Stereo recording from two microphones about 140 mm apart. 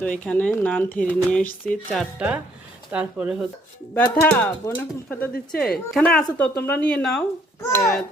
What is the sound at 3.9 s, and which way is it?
Speech, 10° left (ahead or behind).